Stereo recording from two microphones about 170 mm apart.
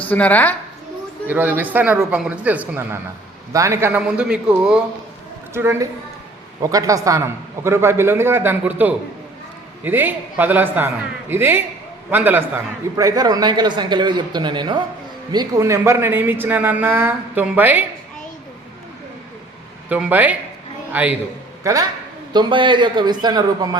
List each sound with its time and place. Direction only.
0.1 s a woman's voice: 10° left (ahead or behind)
1.3 s speech: 10° right (ahead or behind)
5.5 s a man's voice: 15° right (ahead or behind)
19.9 s speech: 10° right (ahead or behind)
21.6 s a man's voice: 20° right (ahead or behind)